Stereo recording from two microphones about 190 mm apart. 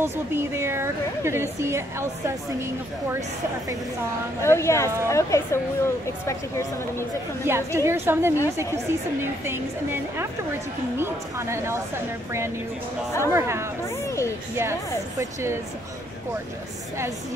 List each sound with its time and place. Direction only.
0.0 s a woman's voice: 10° right (ahead or behind)
4.4 s a woman's voice: 15° left (ahead or behind)
7.4 s a woman's voice: 15° right (ahead or behind)
13.8 s speech: 15° left (ahead or behind)
14.6 s a woman's voice: 15° right (ahead or behind)